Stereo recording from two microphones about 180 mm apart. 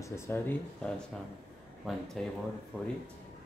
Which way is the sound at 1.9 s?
Centre (ahead or behind).